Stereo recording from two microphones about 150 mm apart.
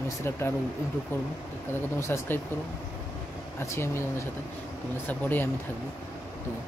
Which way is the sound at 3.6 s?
15° left (ahead or behind).